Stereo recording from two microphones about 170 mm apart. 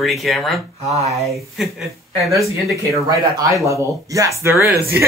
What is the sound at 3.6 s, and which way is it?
Speech, 20° right (ahead or behind).